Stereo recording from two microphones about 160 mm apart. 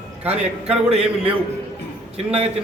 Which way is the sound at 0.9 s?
35° right (ahead or behind).